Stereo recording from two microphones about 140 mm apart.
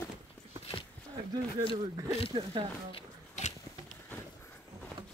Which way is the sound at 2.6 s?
35° right (ahead or behind).